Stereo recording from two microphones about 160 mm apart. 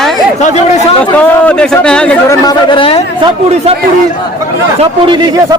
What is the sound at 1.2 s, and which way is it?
Speech, 5° left (ahead or behind).